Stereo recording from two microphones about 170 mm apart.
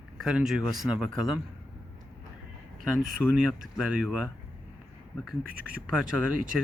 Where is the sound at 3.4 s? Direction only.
Centre (ahead or behind).